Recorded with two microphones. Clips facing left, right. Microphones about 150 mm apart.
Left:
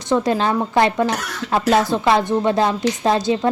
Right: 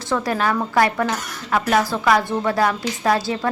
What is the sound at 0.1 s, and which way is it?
A woman's voice, 25° left (ahead or behind).